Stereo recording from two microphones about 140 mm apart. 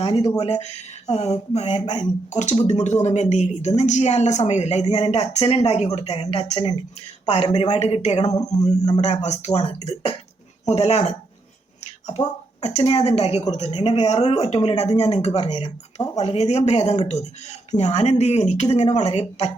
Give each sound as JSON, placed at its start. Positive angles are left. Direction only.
{"t": 0.0, "sound": "speech", "side_deg": 45}
{"t": 8.7, "sound": "a man's voice", "side_deg": 25}
{"t": 9.0, "sound": "speech", "side_deg": 55}
{"t": 12.6, "sound": "speech", "side_deg": 45}
{"t": 15.4, "sound": "speech", "side_deg": 35}
{"t": 16.1, "sound": "speech", "side_deg": 50}